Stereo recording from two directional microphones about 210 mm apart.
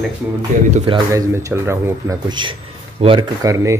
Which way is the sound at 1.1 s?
15° right (ahead or behind).